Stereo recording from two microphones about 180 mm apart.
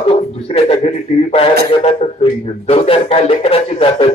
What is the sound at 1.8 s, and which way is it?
A man's voice, 35° left (ahead or behind).